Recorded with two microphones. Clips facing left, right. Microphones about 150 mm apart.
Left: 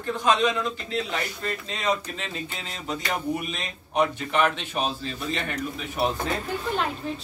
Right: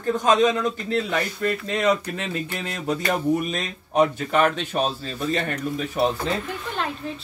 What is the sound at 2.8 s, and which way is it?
Speech, 50° right (ahead or behind).